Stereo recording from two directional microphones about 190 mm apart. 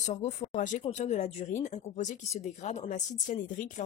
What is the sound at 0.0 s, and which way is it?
Speech, 35° left (ahead or behind).